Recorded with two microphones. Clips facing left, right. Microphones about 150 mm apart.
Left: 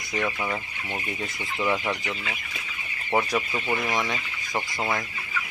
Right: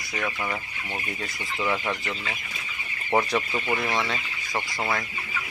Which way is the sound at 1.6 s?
10° left (ahead or behind).